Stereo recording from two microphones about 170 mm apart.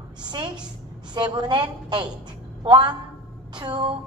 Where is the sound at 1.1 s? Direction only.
25° right (ahead or behind).